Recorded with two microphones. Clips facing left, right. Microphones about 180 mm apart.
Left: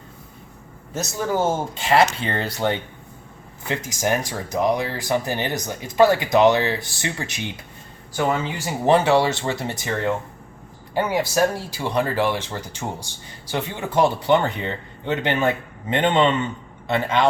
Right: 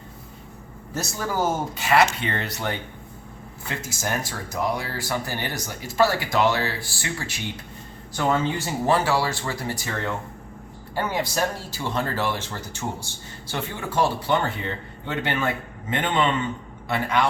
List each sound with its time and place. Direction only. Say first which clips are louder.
0.9 s speech: left 3 dB; 25° left (ahead or behind)
3.7 s speech: left 6 dB; 15° left (ahead or behind)
8.9 s speech: left 6 dB; 20° left (ahead or behind)
11.0 s a man's voice: left 5 dB; 15° left (ahead or behind)